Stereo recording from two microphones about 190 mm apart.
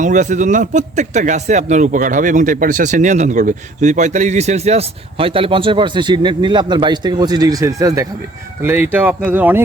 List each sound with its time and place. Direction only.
0.0 s speech: 40° right (ahead or behind); by 9.6 s 10° right (ahead or behind)